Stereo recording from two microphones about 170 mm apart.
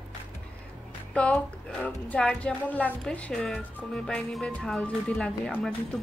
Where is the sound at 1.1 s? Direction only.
5° left (ahead or behind).